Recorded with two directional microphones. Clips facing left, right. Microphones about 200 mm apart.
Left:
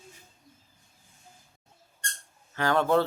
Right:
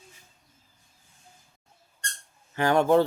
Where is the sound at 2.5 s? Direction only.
15° right (ahead or behind).